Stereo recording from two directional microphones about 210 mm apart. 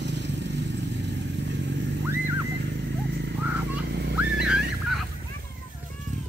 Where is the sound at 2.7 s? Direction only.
55° right (ahead or behind).